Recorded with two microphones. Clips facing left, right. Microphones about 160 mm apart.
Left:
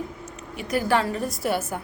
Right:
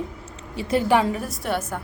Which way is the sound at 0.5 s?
30° right (ahead or behind).